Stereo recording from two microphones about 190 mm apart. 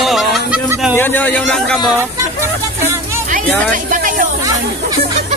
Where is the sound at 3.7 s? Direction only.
45° right (ahead or behind).